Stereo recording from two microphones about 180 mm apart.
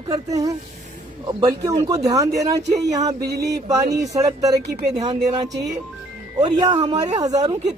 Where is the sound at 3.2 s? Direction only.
65° right (ahead or behind).